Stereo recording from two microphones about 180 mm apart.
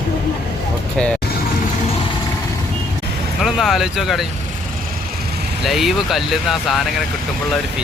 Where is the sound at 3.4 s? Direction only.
Centre (ahead or behind).